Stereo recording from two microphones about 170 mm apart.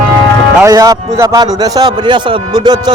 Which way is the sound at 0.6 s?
20° right (ahead or behind).